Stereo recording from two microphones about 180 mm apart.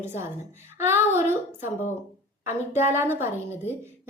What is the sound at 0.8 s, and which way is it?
Speech, 15° right (ahead or behind).